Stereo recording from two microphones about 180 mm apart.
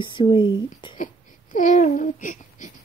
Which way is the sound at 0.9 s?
45° left (ahead or behind).